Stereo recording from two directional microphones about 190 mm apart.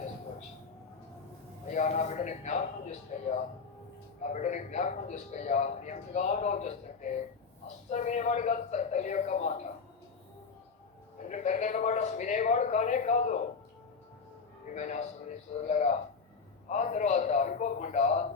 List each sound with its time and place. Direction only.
1.7 s speech: 40° left (ahead or behind)
11.2 s speech: 40° left (ahead or behind)
14.7 s speech: 40° left (ahead or behind)